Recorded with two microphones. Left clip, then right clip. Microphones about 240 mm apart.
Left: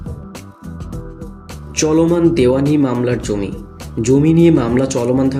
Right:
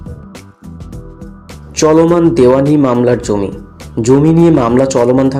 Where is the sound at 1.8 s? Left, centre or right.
Centre.